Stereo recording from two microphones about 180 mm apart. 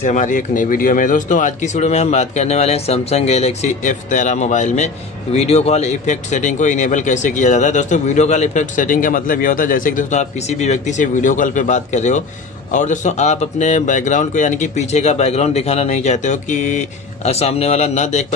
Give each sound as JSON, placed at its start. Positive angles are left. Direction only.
{"t": 0.0, "sound": "speech", "side_deg": 45}